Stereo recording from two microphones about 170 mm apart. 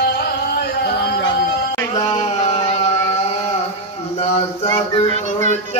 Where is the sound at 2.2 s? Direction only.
35° left (ahead or behind).